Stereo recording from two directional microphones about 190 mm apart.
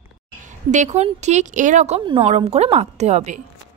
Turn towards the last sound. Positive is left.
turn(degrees=-35)  # may be behind; listen again after turning